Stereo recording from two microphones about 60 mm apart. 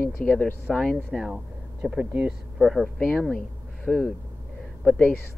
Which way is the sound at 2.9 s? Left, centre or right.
Centre.